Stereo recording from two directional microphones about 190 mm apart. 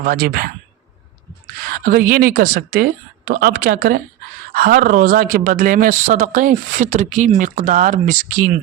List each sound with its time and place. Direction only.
0.0 s speech: 50° right (ahead or behind)
1.7 s speech: 50° right (ahead or behind)